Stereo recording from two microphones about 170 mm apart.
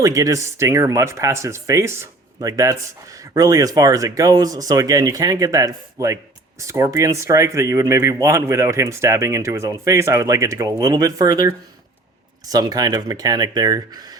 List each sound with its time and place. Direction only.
0.0 s speech: 20° right (ahead or behind)